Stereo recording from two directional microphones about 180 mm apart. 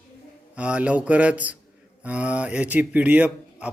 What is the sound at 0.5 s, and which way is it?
A man's voice, 5° right (ahead or behind).